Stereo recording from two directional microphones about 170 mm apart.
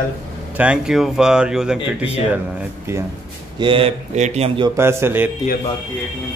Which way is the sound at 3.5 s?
30° right (ahead or behind).